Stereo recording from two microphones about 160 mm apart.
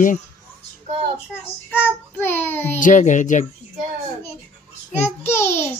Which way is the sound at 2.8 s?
50° left (ahead or behind).